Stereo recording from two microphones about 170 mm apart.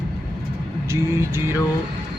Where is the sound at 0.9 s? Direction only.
15° right (ahead or behind).